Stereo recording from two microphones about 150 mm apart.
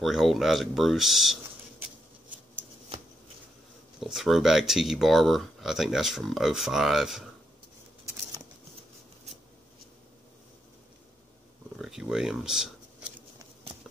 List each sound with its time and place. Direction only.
0.0 s speech: centre (ahead or behind)
4.0 s speech: centre (ahead or behind)
11.8 s a sound: 5° right (ahead or behind)